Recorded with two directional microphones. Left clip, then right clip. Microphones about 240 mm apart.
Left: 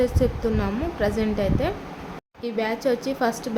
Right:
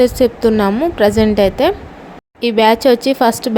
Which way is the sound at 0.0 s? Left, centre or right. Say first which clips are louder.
Right 11 dB; right.